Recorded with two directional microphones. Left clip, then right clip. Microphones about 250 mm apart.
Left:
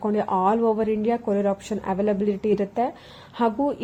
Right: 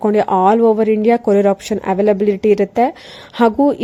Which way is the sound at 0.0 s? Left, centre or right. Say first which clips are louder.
Right 9 dB; right.